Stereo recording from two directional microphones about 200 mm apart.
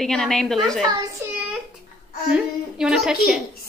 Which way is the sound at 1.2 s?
10° right (ahead or behind).